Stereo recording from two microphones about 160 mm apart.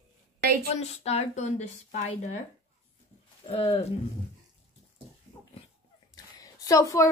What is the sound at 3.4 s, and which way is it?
Speech, 40° left (ahead or behind).